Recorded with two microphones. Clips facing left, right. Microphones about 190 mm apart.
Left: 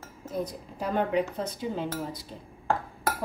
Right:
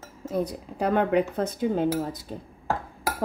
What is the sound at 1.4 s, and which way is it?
Cutlery, 50° right (ahead or behind).